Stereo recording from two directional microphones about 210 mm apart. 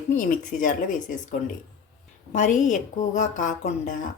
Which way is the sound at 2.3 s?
35° left (ahead or behind).